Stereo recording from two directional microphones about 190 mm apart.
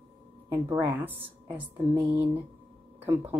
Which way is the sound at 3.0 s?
10° right (ahead or behind).